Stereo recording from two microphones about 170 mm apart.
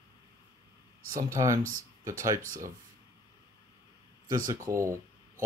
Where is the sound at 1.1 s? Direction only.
20° right (ahead or behind).